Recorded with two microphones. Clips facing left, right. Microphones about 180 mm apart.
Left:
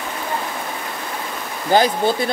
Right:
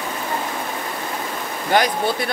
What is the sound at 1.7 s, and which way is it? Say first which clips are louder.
Speech: left 3 dB; 25° left (ahead or behind).